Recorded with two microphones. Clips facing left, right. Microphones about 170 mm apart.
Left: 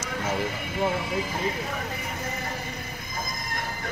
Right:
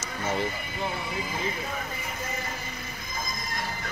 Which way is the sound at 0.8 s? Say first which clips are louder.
Left 6 dB; 90° left.